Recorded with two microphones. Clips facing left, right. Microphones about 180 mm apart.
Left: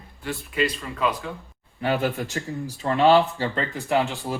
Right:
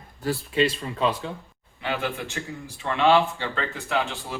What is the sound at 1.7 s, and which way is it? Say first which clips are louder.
Speech: left 5 dB; 40° left (ahead or behind).